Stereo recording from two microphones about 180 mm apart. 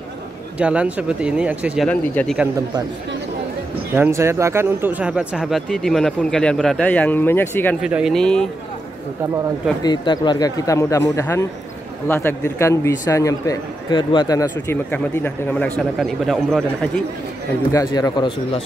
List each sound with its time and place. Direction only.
0.6 s speech: 5° right (ahead or behind)
1.9 s a man's voice: 5° left (ahead or behind)
3.9 s speech: 15° right (ahead or behind); by 7.7 s 10° left (ahead or behind)
7.8 s speech: 5° right (ahead or behind)
9.8 s a man's voice: 25° left (ahead or behind); by 17.0 s centre (ahead or behind)
17.7 s speech: 20° left (ahead or behind)